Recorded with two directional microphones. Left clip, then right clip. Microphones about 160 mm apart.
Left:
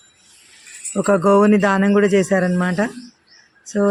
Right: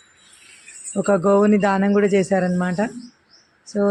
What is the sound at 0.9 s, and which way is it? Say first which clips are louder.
Speech: left 2 dB; 15° left (ahead or behind).